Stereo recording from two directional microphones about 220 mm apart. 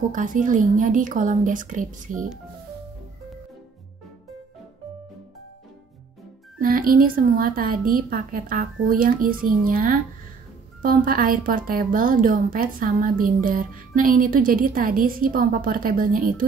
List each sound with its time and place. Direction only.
0.1 s a woman's voice: 35° right (ahead or behind)
6.6 s a woman's voice: 40° right (ahead or behind)